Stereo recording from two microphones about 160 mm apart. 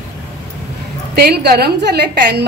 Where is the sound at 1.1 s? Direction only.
85° right.